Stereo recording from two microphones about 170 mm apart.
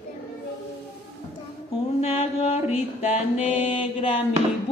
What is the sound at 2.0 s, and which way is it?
Mantra, 35° left (ahead or behind).